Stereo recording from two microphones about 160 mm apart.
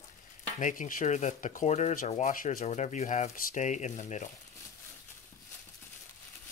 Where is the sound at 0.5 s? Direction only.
50° left (ahead or behind).